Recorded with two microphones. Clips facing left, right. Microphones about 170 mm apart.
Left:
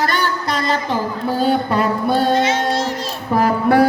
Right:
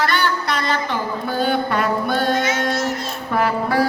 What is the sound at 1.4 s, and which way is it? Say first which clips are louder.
Mantra: left 3 dB; 35° left (ahead or behind).